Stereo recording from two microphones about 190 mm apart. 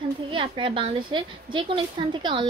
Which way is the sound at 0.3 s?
25° right (ahead or behind).